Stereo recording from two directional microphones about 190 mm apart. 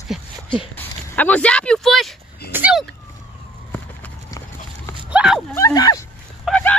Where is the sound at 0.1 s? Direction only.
Centre (ahead or behind).